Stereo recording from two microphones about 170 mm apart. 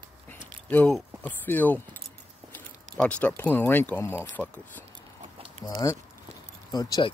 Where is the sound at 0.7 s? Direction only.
10° left (ahead or behind).